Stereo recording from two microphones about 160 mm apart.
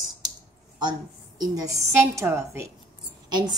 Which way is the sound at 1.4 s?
20° right (ahead or behind).